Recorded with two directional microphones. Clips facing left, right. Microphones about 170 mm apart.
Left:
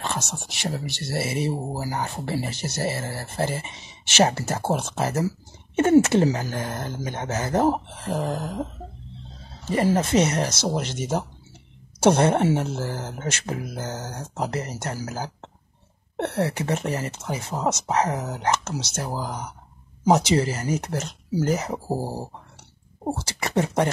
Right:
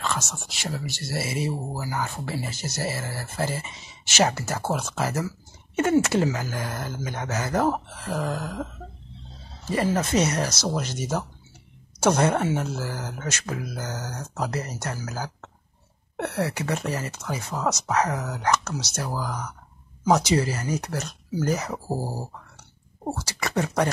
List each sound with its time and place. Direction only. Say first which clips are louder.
0.6 s speech: left 2 dB; 30° left (ahead or behind)
9.7 s speech: left 3 dB; 25° left (ahead or behind)
21.8 s a sound: left 2 dB; 10° left (ahead or behind)
23.0 s speech: left 2 dB; 25° left (ahead or behind)